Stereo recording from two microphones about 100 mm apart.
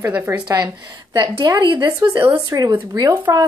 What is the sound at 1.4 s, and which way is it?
Speech, 50° right (ahead or behind).